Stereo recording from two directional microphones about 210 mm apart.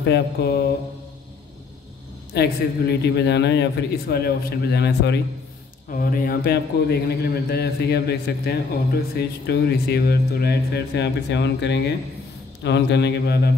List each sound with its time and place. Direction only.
0.0 s a man's voice: 50° left (ahead or behind)
2.3 s a man's voice: 50° left (ahead or behind)